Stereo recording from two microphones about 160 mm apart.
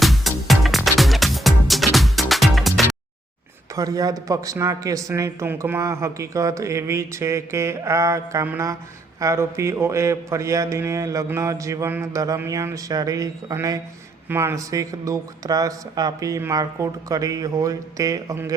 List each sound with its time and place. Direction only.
0.0 s music: centre (ahead or behind)
3.8 s speech: 20° right (ahead or behind)